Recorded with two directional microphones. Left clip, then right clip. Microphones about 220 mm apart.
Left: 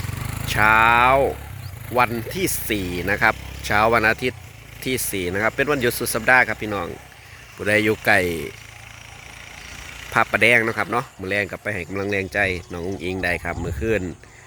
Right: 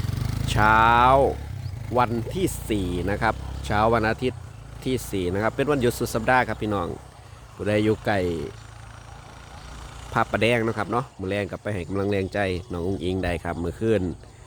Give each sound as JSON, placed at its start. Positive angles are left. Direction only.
{"t": 0.0, "sound": "vehicle", "side_deg": -50}
{"t": 0.4, "sound": "speech", "side_deg": -15}
{"t": 7.6, "sound": "speech", "side_deg": -5}
{"t": 10.1, "sound": "speech", "side_deg": -10}